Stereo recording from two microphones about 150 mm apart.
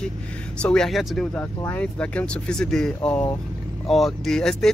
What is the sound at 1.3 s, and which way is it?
Speech, 10° left (ahead or behind).